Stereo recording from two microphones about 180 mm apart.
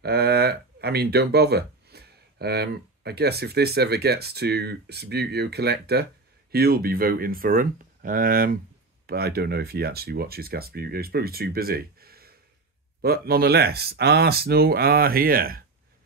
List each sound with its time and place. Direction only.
0.0 s speech: 60° right (ahead or behind)